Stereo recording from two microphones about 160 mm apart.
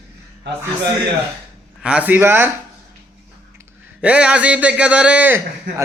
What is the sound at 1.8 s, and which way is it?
Speech, 10° right (ahead or behind).